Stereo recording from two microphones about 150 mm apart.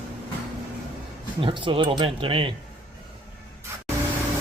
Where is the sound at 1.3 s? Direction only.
35° right (ahead or behind).